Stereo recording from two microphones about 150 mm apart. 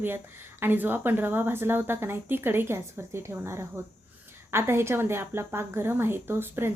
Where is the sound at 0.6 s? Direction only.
15° right (ahead or behind).